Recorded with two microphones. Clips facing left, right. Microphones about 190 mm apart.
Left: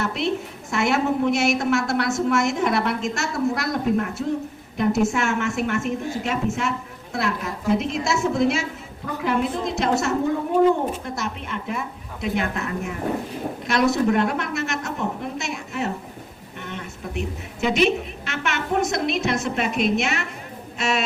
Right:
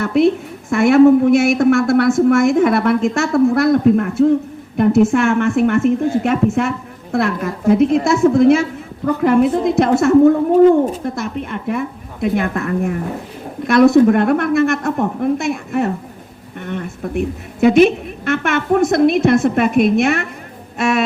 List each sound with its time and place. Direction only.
0.0 s a woman's voice: 55° right (ahead or behind)
20.7 s music: 55° right (ahead or behind)